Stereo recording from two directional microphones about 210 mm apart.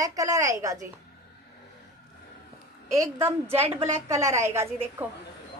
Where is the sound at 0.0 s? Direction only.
15° right (ahead or behind).